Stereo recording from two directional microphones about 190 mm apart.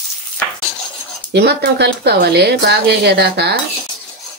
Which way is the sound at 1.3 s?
60° right (ahead or behind).